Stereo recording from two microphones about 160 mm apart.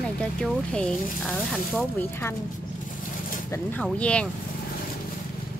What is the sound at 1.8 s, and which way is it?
Speech, 15° left (ahead or behind).